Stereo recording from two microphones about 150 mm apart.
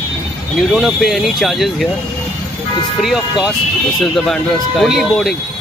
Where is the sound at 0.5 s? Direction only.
Centre (ahead or behind).